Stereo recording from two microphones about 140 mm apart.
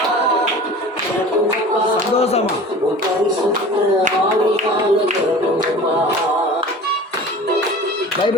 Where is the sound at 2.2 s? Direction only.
50° left (ahead or behind).